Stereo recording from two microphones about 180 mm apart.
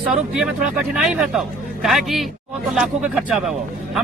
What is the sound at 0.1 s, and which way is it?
Speech, 5° right (ahead or behind).